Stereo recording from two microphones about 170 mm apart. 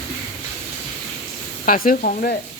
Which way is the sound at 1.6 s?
55° left (ahead or behind).